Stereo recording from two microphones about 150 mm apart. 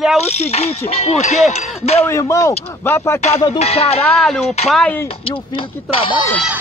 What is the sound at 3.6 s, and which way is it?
Speech, 45° left (ahead or behind).